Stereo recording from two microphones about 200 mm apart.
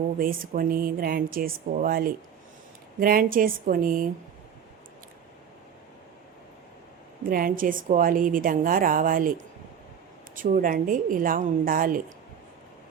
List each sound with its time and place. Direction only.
0.2 s a woman's voice: 45° right (ahead or behind)
7.3 s a woman's voice: 45° right (ahead or behind)
10.3 s a woman's voice: 45° right (ahead or behind)